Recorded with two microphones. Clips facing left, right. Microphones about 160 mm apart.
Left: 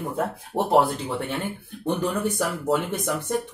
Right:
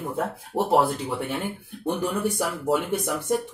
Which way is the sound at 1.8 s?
10° right (ahead or behind).